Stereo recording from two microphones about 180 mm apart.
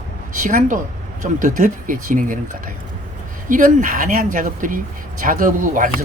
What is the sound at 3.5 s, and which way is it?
Speech, 45° right (ahead or behind).